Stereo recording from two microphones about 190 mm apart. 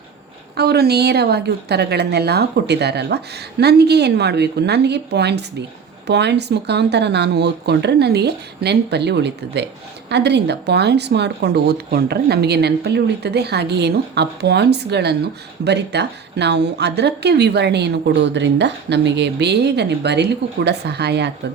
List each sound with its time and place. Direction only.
0.5 s speech: 55° right (ahead or behind)